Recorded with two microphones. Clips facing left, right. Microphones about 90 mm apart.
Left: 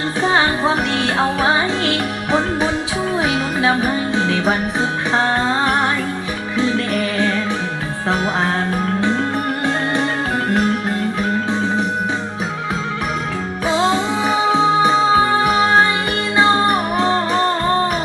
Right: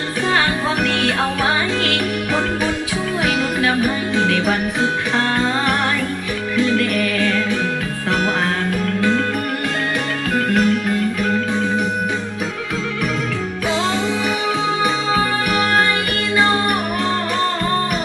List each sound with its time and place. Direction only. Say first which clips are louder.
0.3 s music: left 2 dB; 25° left (ahead or behind)
6.6 s music: right 1 dB; 30° left (ahead or behind)
9.0 s music: right 2 dB; 25° left (ahead or behind)
10.3 s music: right 3 dB; 30° left (ahead or behind)
13.7 s music: left 4 dB; 30° left (ahead or behind)